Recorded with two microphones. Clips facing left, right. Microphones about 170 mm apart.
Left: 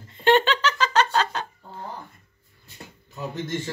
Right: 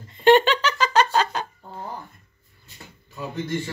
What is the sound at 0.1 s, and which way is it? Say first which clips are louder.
Giggle: right 3 dB; 15° right (ahead or behind).